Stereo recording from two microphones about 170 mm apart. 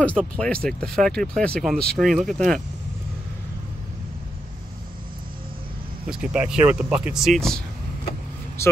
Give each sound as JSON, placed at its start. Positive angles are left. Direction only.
{"t": 0.0, "sound": "speech", "side_deg": 5}
{"t": 6.0, "sound": "speech", "side_deg": -5}
{"t": 8.6, "sound": "a man's voice", "side_deg": 15}